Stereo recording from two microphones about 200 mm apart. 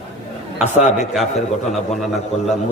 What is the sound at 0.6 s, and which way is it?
Speech, 35° left (ahead or behind).